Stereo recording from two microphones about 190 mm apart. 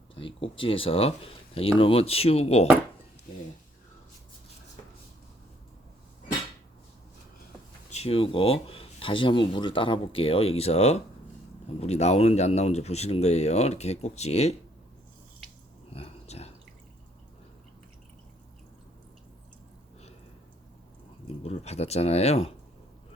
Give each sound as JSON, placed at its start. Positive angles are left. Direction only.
{"t": 0.1, "sound": "speech", "side_deg": 30}
{"t": 7.9, "sound": "speech", "side_deg": 35}
{"t": 15.9, "sound": "a sound", "side_deg": 30}
{"t": 21.2, "sound": "speech", "side_deg": 35}